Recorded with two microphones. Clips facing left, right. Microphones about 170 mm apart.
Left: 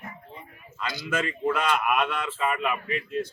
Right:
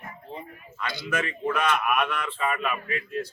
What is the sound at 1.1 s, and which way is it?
Speech, 25° left (ahead or behind).